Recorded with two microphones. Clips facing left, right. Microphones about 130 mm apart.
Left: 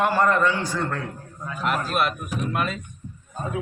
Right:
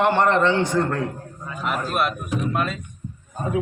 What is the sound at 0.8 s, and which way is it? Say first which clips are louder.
Speech: right 5 dB; 35° right (ahead or behind).